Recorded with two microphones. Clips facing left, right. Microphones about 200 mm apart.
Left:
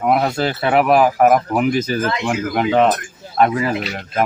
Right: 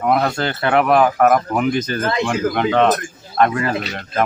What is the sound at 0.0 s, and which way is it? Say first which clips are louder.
Speech: left 1 dB; 10° left (ahead or behind).